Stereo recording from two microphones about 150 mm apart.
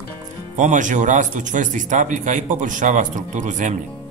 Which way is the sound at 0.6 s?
55° right (ahead or behind).